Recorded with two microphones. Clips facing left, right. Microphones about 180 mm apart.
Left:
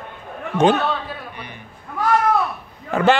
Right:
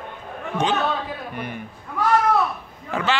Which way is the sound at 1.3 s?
50° right (ahead or behind).